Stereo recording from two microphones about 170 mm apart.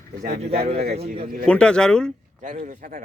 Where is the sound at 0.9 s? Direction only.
35° right (ahead or behind).